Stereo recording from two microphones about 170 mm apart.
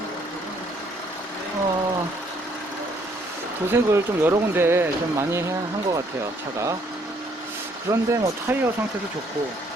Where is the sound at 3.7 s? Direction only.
15° right (ahead or behind).